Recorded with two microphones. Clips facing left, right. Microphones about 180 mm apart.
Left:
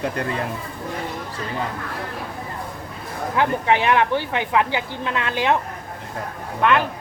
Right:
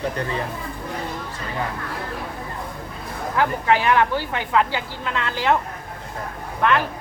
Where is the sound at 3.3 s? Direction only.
20° left (ahead or behind).